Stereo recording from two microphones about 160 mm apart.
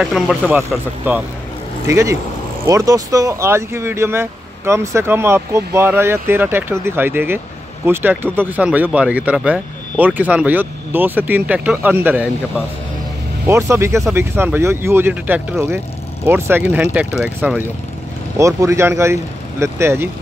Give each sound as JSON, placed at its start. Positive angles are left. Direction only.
{"t": 0.0, "sound": "speech", "side_deg": 0}